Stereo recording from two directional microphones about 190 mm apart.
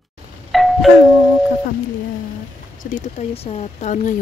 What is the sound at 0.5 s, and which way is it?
Doorbell, centre (ahead or behind).